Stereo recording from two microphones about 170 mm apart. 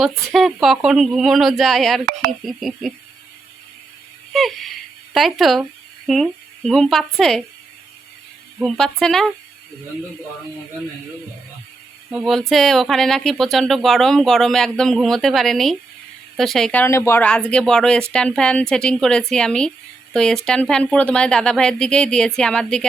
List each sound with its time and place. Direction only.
0.0 s speech: centre (ahead or behind)
4.3 s speech: centre (ahead or behind)
8.5 s speech: centre (ahead or behind)
12.1 s speech: centre (ahead or behind)
16.8 s speech: 15° left (ahead or behind)